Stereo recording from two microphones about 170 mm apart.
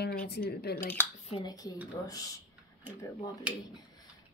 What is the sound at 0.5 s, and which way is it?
Speech, 70° left (ahead or behind).